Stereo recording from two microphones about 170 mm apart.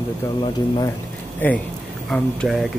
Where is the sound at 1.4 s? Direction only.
10° left (ahead or behind).